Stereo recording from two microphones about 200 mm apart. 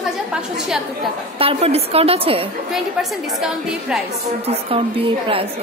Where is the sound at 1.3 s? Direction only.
30° right (ahead or behind).